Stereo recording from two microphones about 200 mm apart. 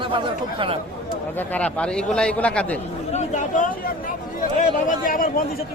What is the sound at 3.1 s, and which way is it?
Speech, 35° left (ahead or behind).